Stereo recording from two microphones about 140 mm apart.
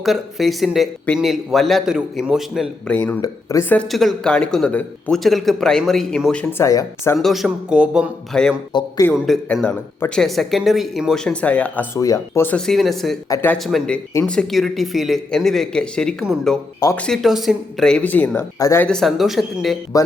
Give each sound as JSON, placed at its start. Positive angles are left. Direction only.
{"t": 0.0, "sound": "speech", "side_deg": 0}
{"t": 2.8, "sound": "speech", "side_deg": 15}
{"t": 3.9, "sound": "speech", "side_deg": 5}
{"t": 6.4, "sound": "speech", "side_deg": 20}
{"t": 7.2, "sound": "speech", "side_deg": 0}
{"t": 8.3, "sound": "speech", "side_deg": 5}
{"t": 8.7, "sound": "a man's voice", "side_deg": 35}
{"t": 9.1, "sound": "speech", "side_deg": 0}
{"t": 11.9, "sound": "speech", "side_deg": 25}
{"t": 13.3, "sound": "speech", "side_deg": 15}
{"t": 13.7, "sound": "speech", "side_deg": 0}
{"t": 18.9, "sound": "speech", "side_deg": 0}